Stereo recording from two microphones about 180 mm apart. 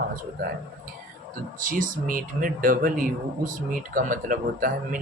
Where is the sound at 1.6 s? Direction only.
50° right (ahead or behind).